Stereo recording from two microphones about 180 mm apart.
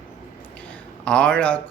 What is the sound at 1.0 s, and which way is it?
Speech, 5° left (ahead or behind).